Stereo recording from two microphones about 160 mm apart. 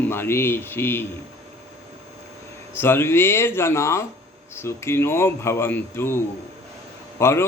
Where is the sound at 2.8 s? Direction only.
15° left (ahead or behind).